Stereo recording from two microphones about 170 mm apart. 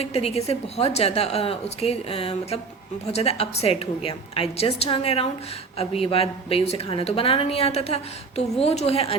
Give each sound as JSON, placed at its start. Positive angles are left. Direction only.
{"t": 0.0, "sound": "a woman's voice", "side_deg": 35}